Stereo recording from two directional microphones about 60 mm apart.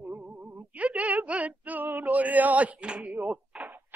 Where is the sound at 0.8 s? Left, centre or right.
Right.